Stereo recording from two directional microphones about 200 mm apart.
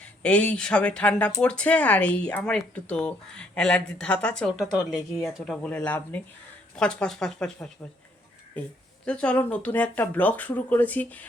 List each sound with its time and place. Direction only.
0.0 s speech: 5° left (ahead or behind)
9.0 s speech: 5° left (ahead or behind)